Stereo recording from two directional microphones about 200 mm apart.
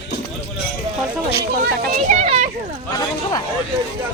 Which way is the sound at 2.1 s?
35° right (ahead or behind).